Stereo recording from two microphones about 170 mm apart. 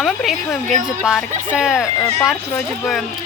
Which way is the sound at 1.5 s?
5° right (ahead or behind).